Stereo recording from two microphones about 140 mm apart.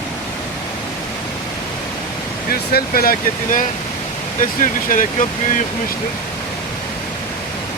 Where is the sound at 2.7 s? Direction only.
90° left; by 5.3 s 70° left (ahead or behind).